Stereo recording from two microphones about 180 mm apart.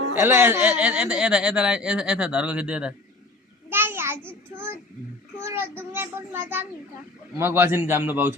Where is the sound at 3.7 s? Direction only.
10° right (ahead or behind).